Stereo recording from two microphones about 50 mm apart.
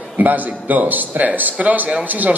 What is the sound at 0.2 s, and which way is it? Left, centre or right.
A man's voice, right.